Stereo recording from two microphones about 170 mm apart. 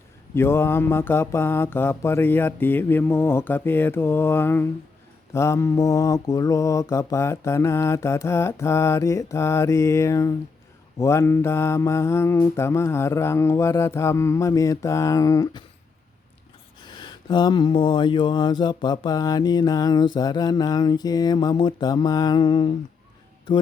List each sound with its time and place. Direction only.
0.3 s mantra: 15° left (ahead or behind)
16.8 s speech: 25° left (ahead or behind)